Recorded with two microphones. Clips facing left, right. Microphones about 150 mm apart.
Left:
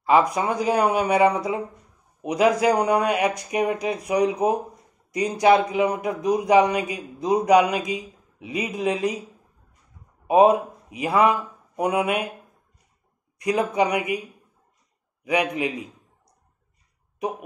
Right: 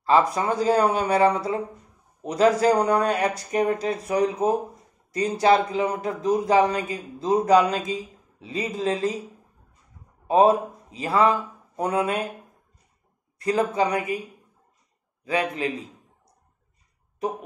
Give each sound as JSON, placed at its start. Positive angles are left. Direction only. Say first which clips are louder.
{"t": 0.0, "sound": "speech", "louder": "left 1 dB", "side_deg": 15}
{"t": 10.2, "sound": "speech", "louder": "left 2 dB", "side_deg": 15}
{"t": 13.4, "sound": "speech", "louder": "left 1 dB", "side_deg": 15}
{"t": 15.2, "sound": "speech", "louder": "left 2 dB", "side_deg": 15}